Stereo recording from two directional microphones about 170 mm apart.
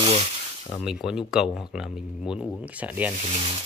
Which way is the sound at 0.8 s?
5° right (ahead or behind).